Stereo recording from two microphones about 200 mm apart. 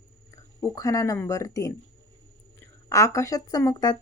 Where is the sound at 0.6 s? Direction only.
15° left (ahead or behind).